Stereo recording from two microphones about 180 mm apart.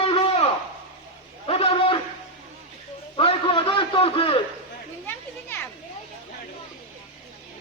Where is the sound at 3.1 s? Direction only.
30° left (ahead or behind).